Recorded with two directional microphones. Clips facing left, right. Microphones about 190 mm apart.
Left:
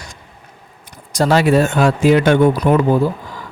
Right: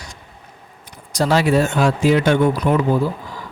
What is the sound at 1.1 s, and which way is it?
Speech, 55° left (ahead or behind).